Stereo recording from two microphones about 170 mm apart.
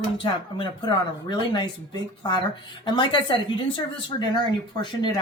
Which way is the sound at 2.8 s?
25° left (ahead or behind).